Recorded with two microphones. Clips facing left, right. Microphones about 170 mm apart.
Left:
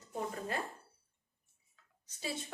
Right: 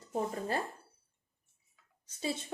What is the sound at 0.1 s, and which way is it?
Speech, 35° right (ahead or behind).